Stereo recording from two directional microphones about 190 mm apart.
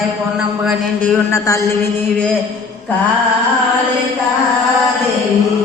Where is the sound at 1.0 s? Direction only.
15° left (ahead or behind).